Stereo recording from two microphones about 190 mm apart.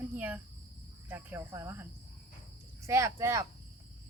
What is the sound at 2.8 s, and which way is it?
Speech, 15° right (ahead or behind).